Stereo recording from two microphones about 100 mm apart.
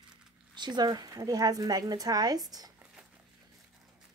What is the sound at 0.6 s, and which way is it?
A woman's voice, 45° right (ahead or behind).